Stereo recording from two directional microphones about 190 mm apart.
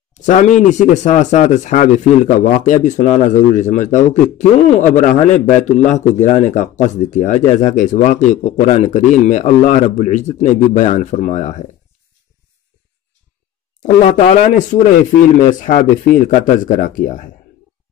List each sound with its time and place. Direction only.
0.1 s speech: 40° left (ahead or behind)
13.7 s speech: 40° left (ahead or behind)